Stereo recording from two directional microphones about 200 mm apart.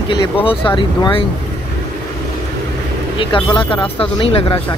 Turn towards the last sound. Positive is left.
turn(degrees=30)  # may be behind; listen again after turning